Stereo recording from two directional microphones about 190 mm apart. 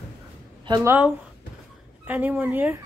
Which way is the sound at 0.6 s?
20° right (ahead or behind).